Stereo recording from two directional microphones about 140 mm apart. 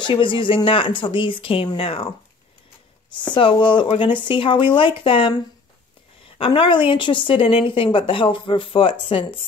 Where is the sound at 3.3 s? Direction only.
35° left (ahead or behind).